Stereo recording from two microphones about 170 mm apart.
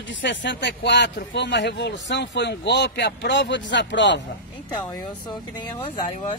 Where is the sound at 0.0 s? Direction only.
90° left.